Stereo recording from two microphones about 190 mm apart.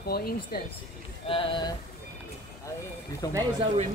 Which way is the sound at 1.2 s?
25° left (ahead or behind).